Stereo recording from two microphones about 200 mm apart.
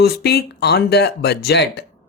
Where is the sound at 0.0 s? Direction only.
55° left (ahead or behind).